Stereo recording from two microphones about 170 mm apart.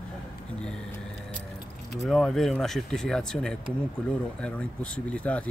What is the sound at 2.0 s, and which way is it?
Speech, centre (ahead or behind).